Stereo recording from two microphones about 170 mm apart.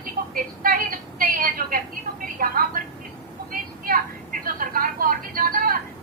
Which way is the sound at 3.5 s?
55° right (ahead or behind).